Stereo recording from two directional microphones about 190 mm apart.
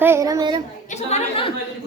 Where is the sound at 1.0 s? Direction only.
30° left (ahead or behind).